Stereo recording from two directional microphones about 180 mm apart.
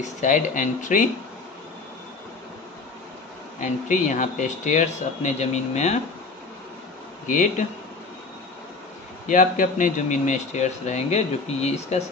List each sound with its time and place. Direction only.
0.0 s speech: 45° left (ahead or behind)
3.5 s speech: 45° left (ahead or behind)
7.2 s speech: 45° left (ahead or behind)
9.3 s speech: 45° left (ahead or behind)